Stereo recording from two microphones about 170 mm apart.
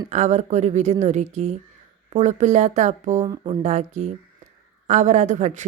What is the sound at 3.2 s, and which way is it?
Speech, 20° right (ahead or behind).